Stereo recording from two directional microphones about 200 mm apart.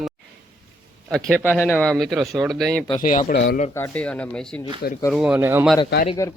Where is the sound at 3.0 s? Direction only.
45° left (ahead or behind).